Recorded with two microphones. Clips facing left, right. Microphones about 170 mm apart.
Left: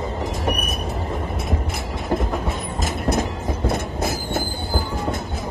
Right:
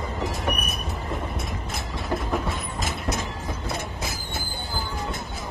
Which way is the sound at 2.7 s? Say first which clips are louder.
Left 10 dB; 55° left (ahead or behind).